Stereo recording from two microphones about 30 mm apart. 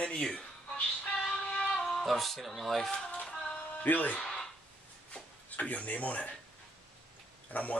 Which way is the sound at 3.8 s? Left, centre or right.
Left.